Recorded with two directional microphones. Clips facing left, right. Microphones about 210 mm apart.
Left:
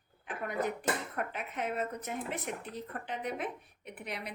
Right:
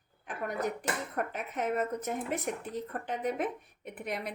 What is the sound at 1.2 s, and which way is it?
Speech, 45° right (ahead or behind).